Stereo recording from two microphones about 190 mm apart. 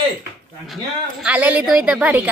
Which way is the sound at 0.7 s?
Centre (ahead or behind).